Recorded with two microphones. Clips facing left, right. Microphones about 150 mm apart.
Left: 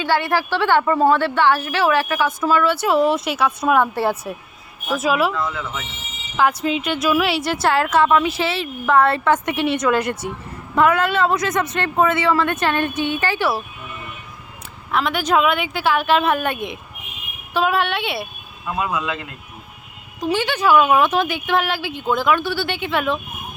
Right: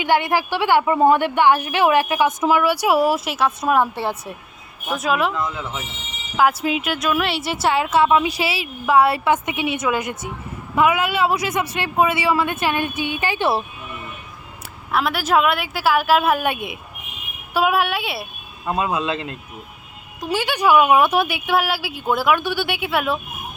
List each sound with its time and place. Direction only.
0.0 s speech: 15° right (ahead or behind); by 5.3 s centre (ahead or behind)
5.3 s speech: 20° right (ahead or behind)
6.3 s speech: 5° right (ahead or behind)
14.9 s speech: 5° right (ahead or behind)
18.6 s speech: 25° right (ahead or behind)
20.2 s speech: 10° right (ahead or behind)